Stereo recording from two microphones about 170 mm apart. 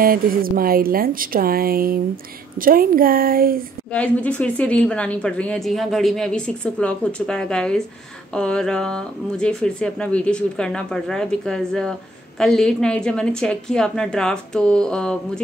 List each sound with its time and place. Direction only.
0.0 s a woman's voice: 60° right (ahead or behind)
3.9 s speech: 5° left (ahead or behind)